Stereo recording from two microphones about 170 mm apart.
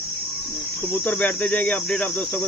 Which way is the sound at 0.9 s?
5° left (ahead or behind).